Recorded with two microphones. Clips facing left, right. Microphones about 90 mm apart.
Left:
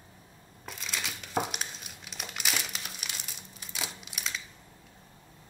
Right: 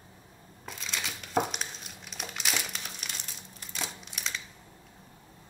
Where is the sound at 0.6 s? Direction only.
Centre (ahead or behind).